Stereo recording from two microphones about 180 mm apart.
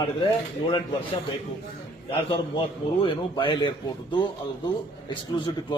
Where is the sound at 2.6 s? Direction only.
25° left (ahead or behind).